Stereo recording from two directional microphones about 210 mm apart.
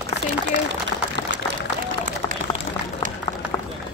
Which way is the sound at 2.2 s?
20° left (ahead or behind).